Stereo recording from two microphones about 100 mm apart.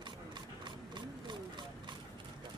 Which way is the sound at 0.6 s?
50° right (ahead or behind).